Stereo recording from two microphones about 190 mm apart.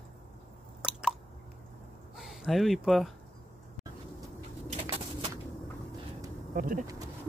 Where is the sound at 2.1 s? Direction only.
Centre (ahead or behind).